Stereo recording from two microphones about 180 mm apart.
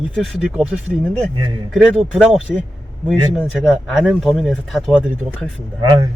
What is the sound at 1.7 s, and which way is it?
Speech, centre (ahead or behind).